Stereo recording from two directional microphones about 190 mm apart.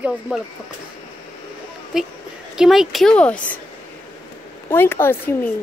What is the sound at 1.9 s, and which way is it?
A woman's voice, centre (ahead or behind).